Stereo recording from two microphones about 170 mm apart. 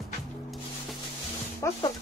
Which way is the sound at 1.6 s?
15° left (ahead or behind).